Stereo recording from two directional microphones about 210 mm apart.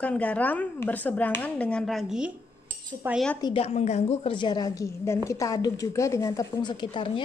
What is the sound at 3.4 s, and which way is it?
A woman's voice, 25° left (ahead or behind).